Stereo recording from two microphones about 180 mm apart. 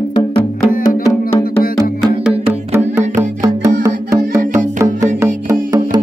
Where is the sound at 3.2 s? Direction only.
20° right (ahead or behind).